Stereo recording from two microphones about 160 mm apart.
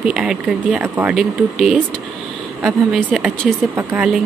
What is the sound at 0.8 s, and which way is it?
Speech, 15° right (ahead or behind).